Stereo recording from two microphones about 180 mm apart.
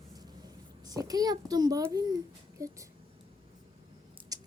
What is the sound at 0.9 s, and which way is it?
A child's voice, 20° right (ahead or behind).